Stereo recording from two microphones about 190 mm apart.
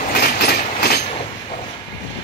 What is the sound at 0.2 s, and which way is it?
Train, 55° left (ahead or behind).